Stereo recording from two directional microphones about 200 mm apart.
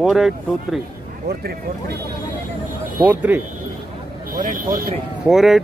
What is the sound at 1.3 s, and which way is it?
Speech, 50° right (ahead or behind).